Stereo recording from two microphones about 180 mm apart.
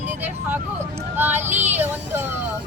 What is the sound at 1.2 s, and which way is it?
Speech, 10° right (ahead or behind).